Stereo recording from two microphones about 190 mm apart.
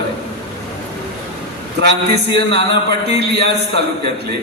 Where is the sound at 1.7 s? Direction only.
60° right (ahead or behind).